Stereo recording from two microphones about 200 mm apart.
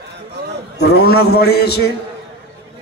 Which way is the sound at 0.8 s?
50° left (ahead or behind).